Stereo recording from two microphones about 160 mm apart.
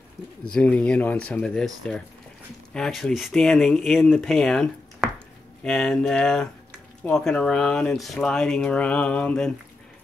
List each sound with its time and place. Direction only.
0.5 s speech: 10° left (ahead or behind)